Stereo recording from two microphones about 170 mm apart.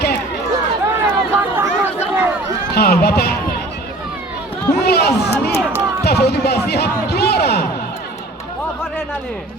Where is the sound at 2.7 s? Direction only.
70° left (ahead or behind).